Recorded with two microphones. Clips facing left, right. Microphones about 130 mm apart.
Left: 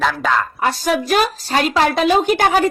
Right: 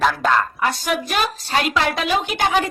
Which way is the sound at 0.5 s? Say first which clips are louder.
Left 4 dB; 35° left (ahead or behind).